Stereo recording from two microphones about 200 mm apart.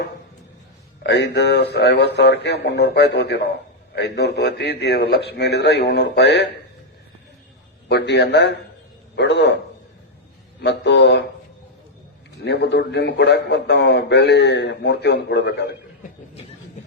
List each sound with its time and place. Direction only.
1.0 s a man's voice: 60° left (ahead or behind)
7.9 s a man's voice: 60° left (ahead or behind)
10.6 s a man's voice: 60° left (ahead or behind)
12.5 s a man's voice: 60° left (ahead or behind)